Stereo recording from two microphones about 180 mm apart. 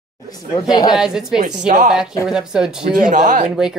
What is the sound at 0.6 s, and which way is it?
Speech, 20° left (ahead or behind).